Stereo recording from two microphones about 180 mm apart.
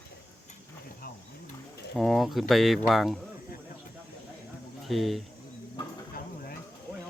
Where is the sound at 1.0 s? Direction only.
50° left (ahead or behind).